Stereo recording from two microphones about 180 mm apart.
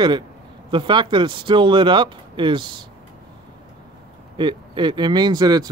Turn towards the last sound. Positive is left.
turn(degrees=-20)  # may be behind; listen again after turning